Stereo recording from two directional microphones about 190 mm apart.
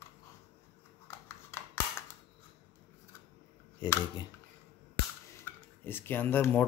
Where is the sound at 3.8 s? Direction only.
20° left (ahead or behind).